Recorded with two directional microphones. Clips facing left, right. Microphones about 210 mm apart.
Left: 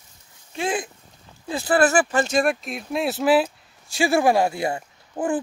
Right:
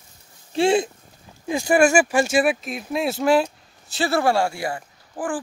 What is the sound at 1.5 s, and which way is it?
A man's voice, 15° right (ahead or behind).